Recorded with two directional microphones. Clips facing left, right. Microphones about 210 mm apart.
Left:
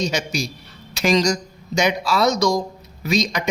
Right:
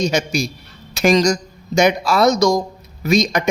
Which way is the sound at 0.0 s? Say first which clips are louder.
Right 5 dB; 50° right (ahead or behind).